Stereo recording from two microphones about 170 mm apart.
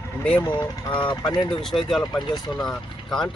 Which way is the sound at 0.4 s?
25° left (ahead or behind).